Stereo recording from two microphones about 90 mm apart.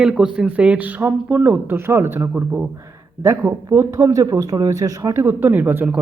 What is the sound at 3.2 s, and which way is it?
Speech, 30° right (ahead or behind).